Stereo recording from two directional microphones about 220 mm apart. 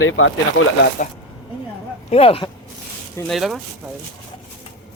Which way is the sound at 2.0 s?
25° left (ahead or behind).